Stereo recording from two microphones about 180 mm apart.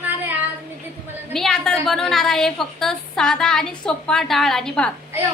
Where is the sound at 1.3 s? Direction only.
Centre (ahead or behind).